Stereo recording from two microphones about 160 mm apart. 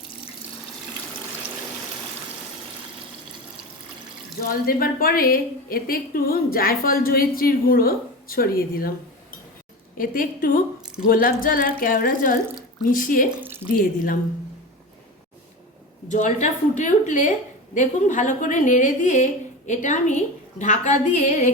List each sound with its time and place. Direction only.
4.6 s a woman's voice: 65° left (ahead or behind)
10.0 s a woman's voice: 60° left (ahead or behind)
13.4 s speech: 15° right (ahead or behind)
13.7 s a woman's voice: 60° left (ahead or behind)
16.0 s a woman's voice: 50° left (ahead or behind)